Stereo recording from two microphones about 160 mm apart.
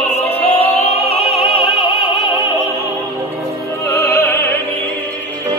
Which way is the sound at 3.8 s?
15° left (ahead or behind).